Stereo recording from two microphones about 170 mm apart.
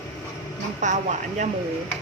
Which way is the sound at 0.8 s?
45° right (ahead or behind).